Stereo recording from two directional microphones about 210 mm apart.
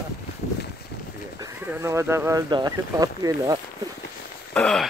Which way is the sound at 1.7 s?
10° right (ahead or behind).